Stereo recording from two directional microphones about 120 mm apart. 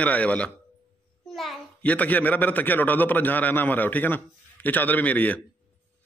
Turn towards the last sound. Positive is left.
turn(degrees=15)  # may be behind; listen again after turning